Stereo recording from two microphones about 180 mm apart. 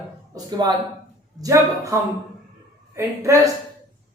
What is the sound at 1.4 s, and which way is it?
A man's voice, 20° right (ahead or behind).